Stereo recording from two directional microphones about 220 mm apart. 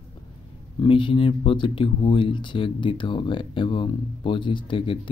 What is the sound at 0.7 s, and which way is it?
Speech, 20° left (ahead or behind).